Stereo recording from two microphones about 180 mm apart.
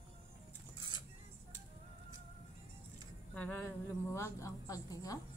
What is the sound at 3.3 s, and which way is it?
A woman's voice, 10° left (ahead or behind).